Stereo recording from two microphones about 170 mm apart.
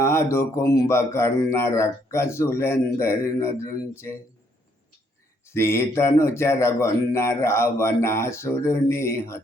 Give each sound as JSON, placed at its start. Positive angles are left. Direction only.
{"t": 0.0, "sound": "speech", "side_deg": 15}
{"t": 5.5, "sound": "speech", "side_deg": 15}